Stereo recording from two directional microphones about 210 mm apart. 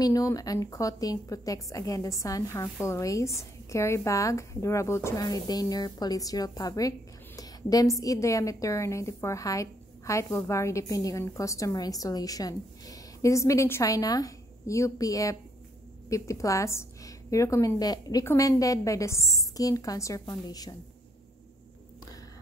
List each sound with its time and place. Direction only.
0.0 s a woman's voice: 15° left (ahead or behind)